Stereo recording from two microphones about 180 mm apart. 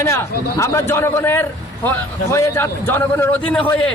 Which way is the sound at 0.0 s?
15° left (ahead or behind).